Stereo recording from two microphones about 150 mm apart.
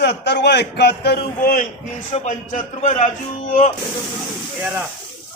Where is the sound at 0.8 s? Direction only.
90° left; by 1.7 s 70° left (ahead or behind).